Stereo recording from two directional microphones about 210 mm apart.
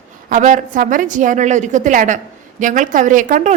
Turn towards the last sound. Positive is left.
turn(degrees=-40)  # may be behind; listen again after turning